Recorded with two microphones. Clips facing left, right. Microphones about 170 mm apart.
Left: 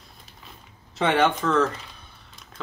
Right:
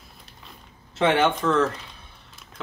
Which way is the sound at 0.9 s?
Centre (ahead or behind).